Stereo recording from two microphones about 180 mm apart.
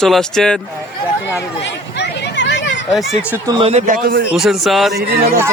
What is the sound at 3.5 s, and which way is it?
Speech, 30° right (ahead or behind).